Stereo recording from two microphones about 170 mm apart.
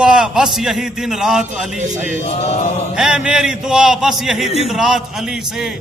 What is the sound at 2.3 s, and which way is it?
Chant, 40° left (ahead or behind).